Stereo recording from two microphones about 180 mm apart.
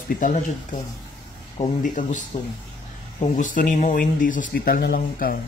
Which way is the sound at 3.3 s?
50° left (ahead or behind).